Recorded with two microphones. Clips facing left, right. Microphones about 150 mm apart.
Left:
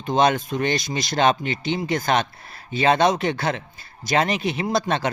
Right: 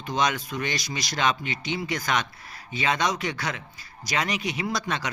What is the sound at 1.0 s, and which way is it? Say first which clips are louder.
Speech: left 6 dB; 30° left (ahead or behind).